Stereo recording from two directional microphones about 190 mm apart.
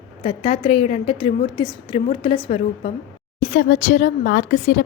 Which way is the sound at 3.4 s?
45° left (ahead or behind).